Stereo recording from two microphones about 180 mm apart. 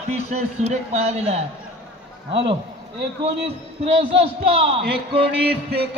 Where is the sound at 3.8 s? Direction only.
30° right (ahead or behind).